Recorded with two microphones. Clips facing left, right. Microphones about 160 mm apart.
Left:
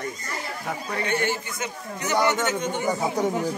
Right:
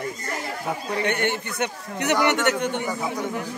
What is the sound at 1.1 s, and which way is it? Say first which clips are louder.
A man's voice: left 1 dB; 65° right (ahead or behind).